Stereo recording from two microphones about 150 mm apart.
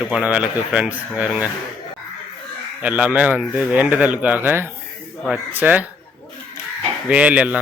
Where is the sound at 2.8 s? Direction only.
10° right (ahead or behind).